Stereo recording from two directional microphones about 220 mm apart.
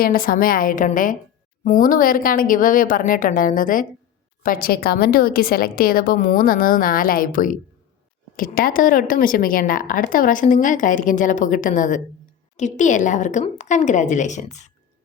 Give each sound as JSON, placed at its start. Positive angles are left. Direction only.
{"t": 0.0, "sound": "a woman's voice", "side_deg": 40}